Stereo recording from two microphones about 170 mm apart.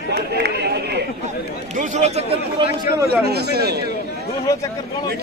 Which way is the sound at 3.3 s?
75° right (ahead or behind).